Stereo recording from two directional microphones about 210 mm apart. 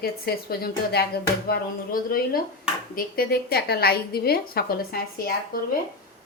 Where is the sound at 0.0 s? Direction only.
50° left (ahead or behind).